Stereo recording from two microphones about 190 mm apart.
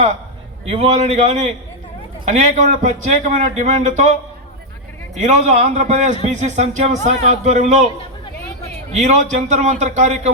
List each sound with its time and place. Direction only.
0.6 s speech: 35° right (ahead or behind)
5.1 s speech: 40° right (ahead or behind)
8.9 s speech: 35° right (ahead or behind)